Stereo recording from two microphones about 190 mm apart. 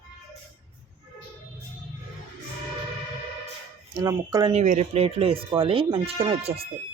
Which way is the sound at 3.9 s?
20° right (ahead or behind).